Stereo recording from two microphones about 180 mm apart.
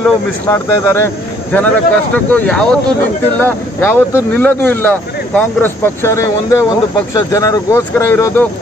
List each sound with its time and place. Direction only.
0.5 s speech: 15° left (ahead or behind)